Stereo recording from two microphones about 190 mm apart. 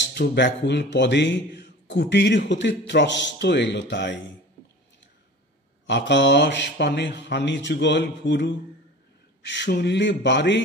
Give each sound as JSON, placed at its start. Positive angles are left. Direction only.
{"t": 0.0, "sound": "speech", "side_deg": 60}
{"t": 5.9, "sound": "speech", "side_deg": 70}